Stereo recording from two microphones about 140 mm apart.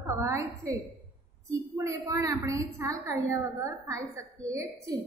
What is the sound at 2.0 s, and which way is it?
A woman's voice, 25° right (ahead or behind).